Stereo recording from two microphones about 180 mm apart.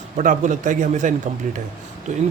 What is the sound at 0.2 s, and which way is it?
Speech, 45° right (ahead or behind).